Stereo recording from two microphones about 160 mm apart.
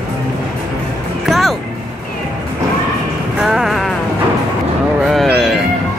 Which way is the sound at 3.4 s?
Centre (ahead or behind).